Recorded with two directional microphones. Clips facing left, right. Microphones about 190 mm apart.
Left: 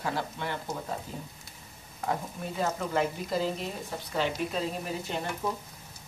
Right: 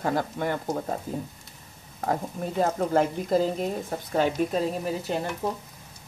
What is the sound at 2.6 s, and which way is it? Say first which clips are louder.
Speech: right 5 dB; 40° right (ahead or behind).